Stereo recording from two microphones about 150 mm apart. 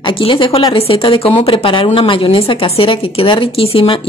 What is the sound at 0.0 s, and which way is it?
Speech, 35° left (ahead or behind).